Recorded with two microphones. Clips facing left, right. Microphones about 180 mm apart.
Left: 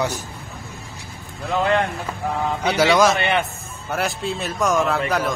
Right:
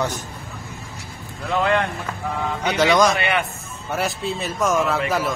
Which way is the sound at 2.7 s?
5° left (ahead or behind).